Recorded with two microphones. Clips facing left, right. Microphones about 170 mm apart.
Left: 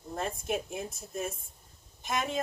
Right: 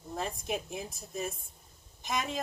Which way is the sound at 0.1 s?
Centre (ahead or behind).